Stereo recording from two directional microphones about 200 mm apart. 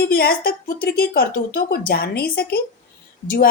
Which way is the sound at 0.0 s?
45° left (ahead or behind).